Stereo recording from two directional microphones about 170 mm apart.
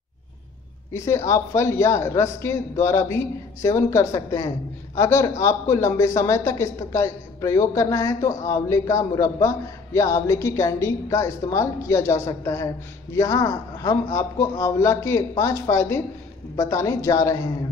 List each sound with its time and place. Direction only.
0.9 s a man's voice: 15° left (ahead or behind)